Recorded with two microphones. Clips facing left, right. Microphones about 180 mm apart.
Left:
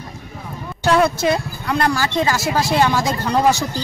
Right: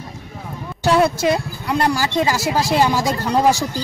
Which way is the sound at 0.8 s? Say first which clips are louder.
Even; 5° right (ahead or behind).